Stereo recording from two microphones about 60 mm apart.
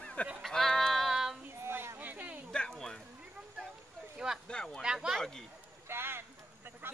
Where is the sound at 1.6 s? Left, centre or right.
Right.